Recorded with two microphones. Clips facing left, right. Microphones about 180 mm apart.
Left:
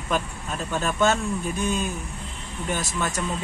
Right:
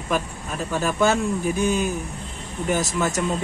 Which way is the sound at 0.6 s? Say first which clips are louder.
Right 2 dB; 10° right (ahead or behind).